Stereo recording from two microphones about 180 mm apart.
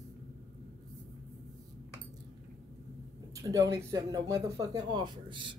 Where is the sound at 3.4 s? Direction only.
20° right (ahead or behind).